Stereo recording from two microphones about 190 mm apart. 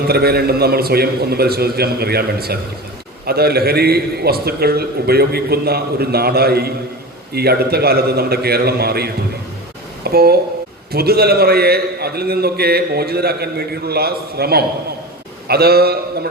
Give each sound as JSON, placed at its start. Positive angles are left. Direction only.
{"t": 0.0, "sound": "a man's voice", "side_deg": -55}